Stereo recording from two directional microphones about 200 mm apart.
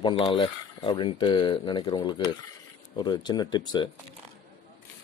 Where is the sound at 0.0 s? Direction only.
25° left (ahead or behind).